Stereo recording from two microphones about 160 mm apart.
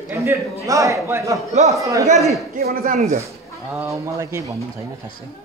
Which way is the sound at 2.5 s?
65° right (ahead or behind).